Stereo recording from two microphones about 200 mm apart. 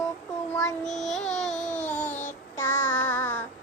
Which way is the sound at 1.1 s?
35° left (ahead or behind).